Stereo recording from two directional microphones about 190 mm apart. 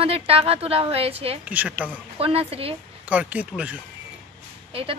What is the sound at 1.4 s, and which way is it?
Speech, 5° right (ahead or behind).